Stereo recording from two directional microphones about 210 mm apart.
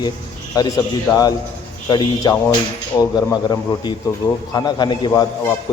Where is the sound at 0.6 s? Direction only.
20° left (ahead or behind).